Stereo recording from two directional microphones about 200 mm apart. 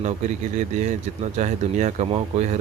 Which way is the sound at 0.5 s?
35° right (ahead or behind).